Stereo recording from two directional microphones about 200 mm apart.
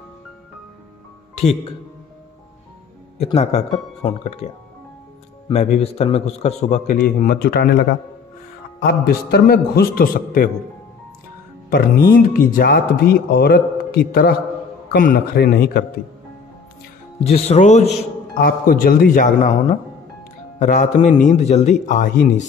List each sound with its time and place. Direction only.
1.3 s speech: 30° left (ahead or behind)
3.2 s a man's voice: 30° left (ahead or behind)
5.5 s a man's voice: 35° left (ahead or behind); by 7.8 s 50° left (ahead or behind)
8.8 s a man's voice: 50° left (ahead or behind)
12.1 s a man's voice: 45° left (ahead or behind)
17.2 s a man's voice: 35° left (ahead or behind)
17.8 s a man's voice: 45° left (ahead or behind)